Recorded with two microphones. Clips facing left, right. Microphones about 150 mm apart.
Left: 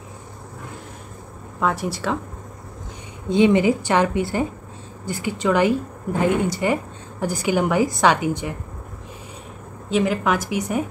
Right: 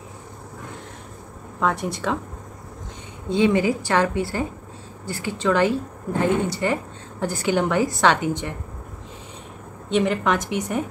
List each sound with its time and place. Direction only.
1.6 s speech: 5° left (ahead or behind)
3.3 s a woman's voice: 20° left (ahead or behind)
9.8 s a woman's voice: 5° left (ahead or behind)